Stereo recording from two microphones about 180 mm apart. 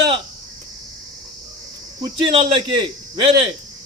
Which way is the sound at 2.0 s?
30° right (ahead or behind).